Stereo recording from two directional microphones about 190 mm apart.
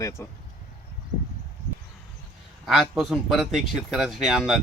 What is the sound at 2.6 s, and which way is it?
Speech, centre (ahead or behind).